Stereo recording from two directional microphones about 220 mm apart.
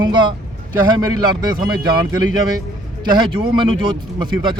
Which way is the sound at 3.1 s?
20° right (ahead or behind).